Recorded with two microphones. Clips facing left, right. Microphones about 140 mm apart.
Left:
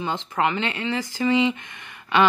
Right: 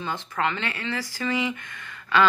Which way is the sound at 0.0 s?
20° left (ahead or behind).